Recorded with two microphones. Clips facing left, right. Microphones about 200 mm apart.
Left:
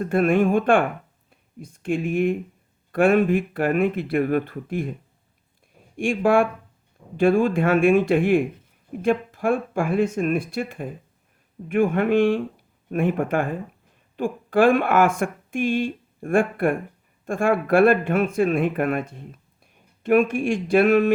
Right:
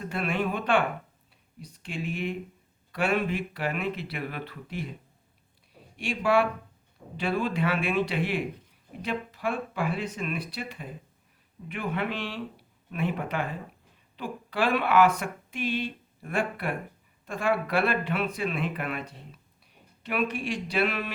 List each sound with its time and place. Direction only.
0.0 s speech: 50° left (ahead or behind)
6.0 s speech: 50° left (ahead or behind)